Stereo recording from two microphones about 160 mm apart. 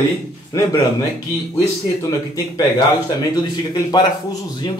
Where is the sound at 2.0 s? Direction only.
20° left (ahead or behind).